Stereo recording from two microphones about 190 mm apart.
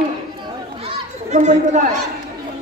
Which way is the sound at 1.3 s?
40° right (ahead or behind).